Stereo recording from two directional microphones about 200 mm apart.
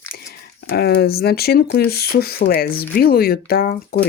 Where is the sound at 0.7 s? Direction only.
55° left (ahead or behind).